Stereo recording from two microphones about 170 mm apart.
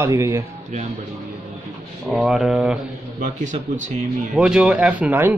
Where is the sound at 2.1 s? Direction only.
5° right (ahead or behind).